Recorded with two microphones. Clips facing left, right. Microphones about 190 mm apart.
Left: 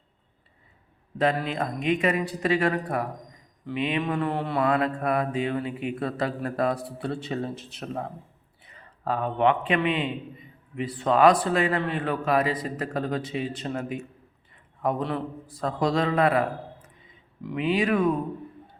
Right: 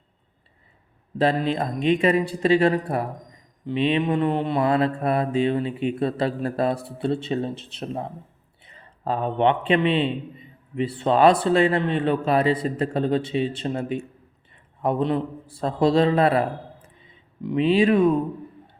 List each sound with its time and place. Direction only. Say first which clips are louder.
1.2 s mantra: right 3 dB; 30° right (ahead or behind)
8.6 s a man's voice: right 2 dB; 30° right (ahead or behind)
10.8 s mantra: right 2 dB; 25° right (ahead or behind)